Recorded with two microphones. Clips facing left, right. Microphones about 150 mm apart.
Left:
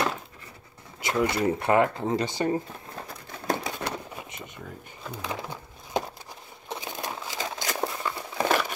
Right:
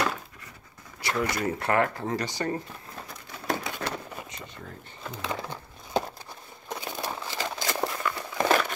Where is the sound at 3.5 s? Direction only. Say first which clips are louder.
Left 1 dB; 20° left (ahead or behind).